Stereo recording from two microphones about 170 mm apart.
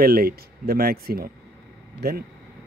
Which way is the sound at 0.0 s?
60° right (ahead or behind).